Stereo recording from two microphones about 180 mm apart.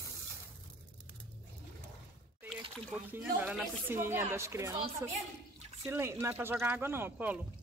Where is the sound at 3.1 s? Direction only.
10° right (ahead or behind).